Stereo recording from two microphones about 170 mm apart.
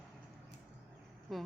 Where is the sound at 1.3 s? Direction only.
Centre (ahead or behind).